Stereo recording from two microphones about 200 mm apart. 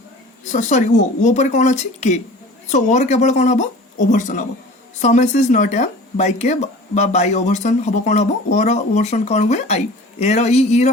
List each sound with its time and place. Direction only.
0.5 s speech: 40° left (ahead or behind)